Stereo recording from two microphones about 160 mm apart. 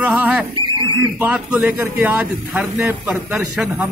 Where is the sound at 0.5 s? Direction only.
30° right (ahead or behind).